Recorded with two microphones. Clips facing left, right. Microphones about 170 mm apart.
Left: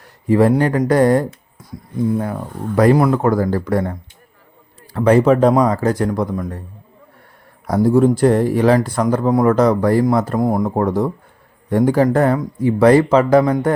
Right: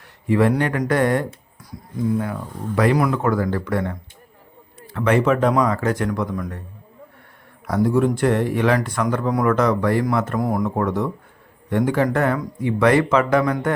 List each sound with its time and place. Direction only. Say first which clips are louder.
0.3 s speech: left 4 dB; 35° left (ahead or behind)
4.9 s speech: left 6 dB; 35° left (ahead or behind)
7.7 s speech: left 5 dB; 35° left (ahead or behind)